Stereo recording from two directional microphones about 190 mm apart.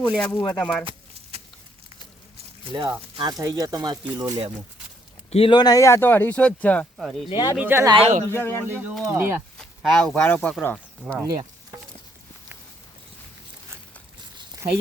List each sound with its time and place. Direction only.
0.1 s speech: 5° left (ahead or behind)
0.9 s a sound: 30° right (ahead or behind)
3.2 s speech: 20° right (ahead or behind)
5.3 s speech: 30° left (ahead or behind); by 7.3 s centre (ahead or behind)
7.3 s speech: 25° left (ahead or behind)
7.5 s speech: 10° right (ahead or behind)
7.9 s speech: 35° right (ahead or behind)
8.3 s speech: 10° left (ahead or behind)
8.6 s speech: 10° right (ahead or behind)
9.6 s speech: centre (ahead or behind)
11.2 s insect: 20° right (ahead or behind)